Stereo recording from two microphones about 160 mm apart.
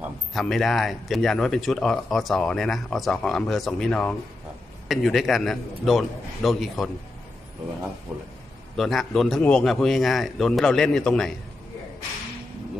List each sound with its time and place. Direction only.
0.3 s speech: centre (ahead or behind)
8.1 s speech: 5° right (ahead or behind)